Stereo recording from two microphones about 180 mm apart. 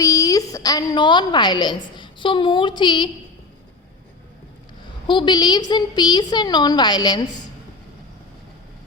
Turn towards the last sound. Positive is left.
turn(degrees=20)  # may be behind; listen again after turning